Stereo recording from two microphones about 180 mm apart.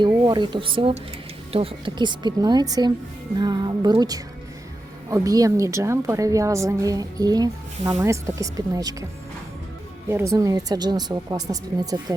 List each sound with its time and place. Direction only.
0.0 s a woman's voice: 25° right (ahead or behind)
10.1 s speech: 15° right (ahead or behind)